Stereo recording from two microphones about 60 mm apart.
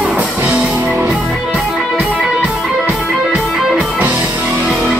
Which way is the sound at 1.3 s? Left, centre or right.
Centre.